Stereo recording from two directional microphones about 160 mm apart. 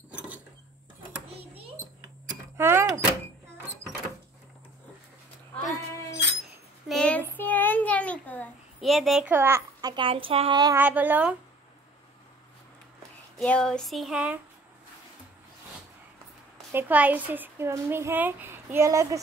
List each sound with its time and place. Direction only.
2.5 s keys jangling: 15° right (ahead or behind)
6.9 s child singing: 5° left (ahead or behind)
7.3 s a sound: 10° left (ahead or behind)
9.3 s a child's voice: 15° right (ahead or behind); by 10.6 s 35° right (ahead or behind)
10.8 s a woman's voice: 10° right (ahead or behind)
13.4 s a sound: 5° left (ahead or behind)
16.7 s a woman's voice: 10° right (ahead or behind)